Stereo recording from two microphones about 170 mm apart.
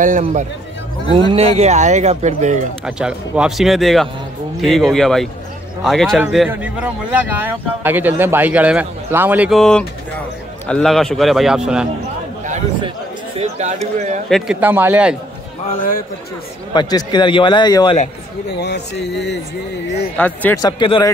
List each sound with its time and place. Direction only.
0.2 s speech: 40° right (ahead or behind)
3.0 s a man's voice: 5° right (ahead or behind)
9.5 s a man's voice: 5° left (ahead or behind)
13.4 s clip-clop: 40° right (ahead or behind)
14.3 s speech: 5° right (ahead or behind)
16.7 s a man's voice: 25° left (ahead or behind)
18.5 s speech: 80° left
20.2 s speech: 10° left (ahead or behind)
20.5 s a man's voice: 25° left (ahead or behind)